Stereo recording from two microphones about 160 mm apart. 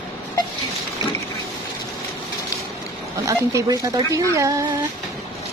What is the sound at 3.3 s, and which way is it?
Speech, 20° right (ahead or behind).